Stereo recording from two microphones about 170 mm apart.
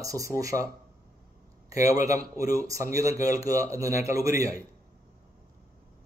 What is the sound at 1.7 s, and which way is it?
Speech, 20° right (ahead or behind).